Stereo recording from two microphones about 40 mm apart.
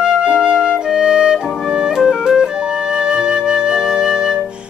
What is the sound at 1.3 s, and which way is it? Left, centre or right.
Music, centre.